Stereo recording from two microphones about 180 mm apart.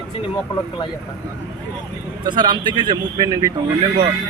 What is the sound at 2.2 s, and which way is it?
Speech, 25° right (ahead or behind).